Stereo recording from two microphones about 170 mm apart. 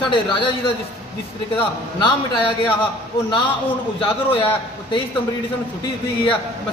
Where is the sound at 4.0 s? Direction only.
30° left (ahead or behind).